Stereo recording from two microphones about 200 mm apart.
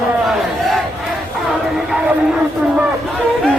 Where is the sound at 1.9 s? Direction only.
5° right (ahead or behind).